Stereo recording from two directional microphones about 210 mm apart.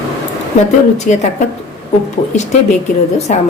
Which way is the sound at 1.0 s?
35° left (ahead or behind).